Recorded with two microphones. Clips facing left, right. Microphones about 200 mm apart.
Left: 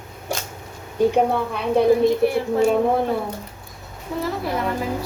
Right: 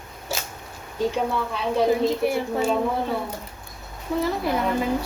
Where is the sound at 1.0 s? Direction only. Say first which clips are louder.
Left 6 dB; 55° left (ahead or behind).